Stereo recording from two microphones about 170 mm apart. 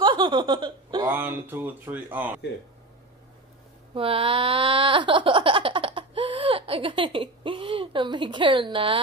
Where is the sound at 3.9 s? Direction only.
35° right (ahead or behind).